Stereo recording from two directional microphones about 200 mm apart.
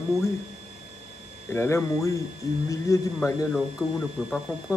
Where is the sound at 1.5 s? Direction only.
15° left (ahead or behind).